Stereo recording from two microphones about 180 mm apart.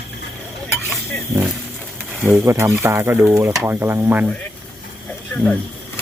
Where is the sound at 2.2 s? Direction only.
15° right (ahead or behind).